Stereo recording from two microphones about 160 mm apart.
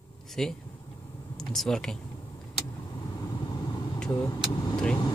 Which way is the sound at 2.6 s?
25° left (ahead or behind).